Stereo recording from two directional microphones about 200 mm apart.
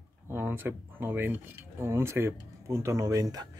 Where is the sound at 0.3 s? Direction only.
10° right (ahead or behind).